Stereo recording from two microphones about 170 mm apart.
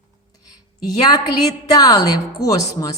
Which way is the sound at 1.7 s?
20° left (ahead or behind).